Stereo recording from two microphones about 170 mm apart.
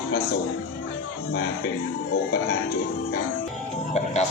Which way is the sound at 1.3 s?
65° left (ahead or behind).